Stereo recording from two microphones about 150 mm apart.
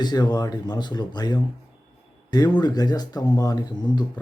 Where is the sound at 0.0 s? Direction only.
30° left (ahead or behind).